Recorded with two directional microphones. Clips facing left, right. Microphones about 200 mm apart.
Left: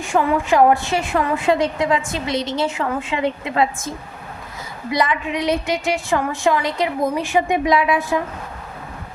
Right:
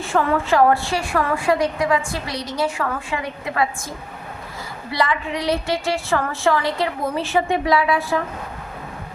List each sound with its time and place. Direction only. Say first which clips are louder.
0.0 s a woman's voice: left 1 dB; 15° left (ahead or behind)